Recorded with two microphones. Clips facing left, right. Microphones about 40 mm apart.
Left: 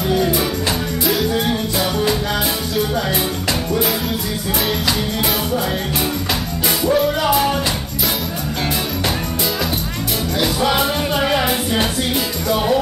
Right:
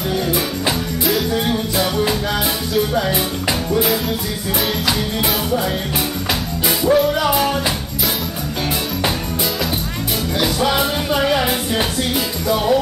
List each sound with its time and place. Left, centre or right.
1.0 s music: centre
6.9 s music: centre
10.4 s music: centre